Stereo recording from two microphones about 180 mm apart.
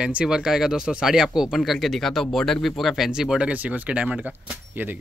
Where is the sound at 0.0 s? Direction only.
5° right (ahead or behind).